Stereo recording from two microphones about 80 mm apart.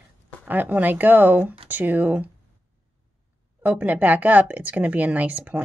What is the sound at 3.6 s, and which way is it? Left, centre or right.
Speech, centre.